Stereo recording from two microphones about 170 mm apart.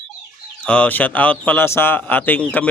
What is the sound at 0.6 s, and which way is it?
A man's voice, 5° left (ahead or behind).